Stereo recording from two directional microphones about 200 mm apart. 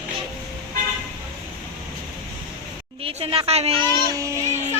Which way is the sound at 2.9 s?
30° right (ahead or behind).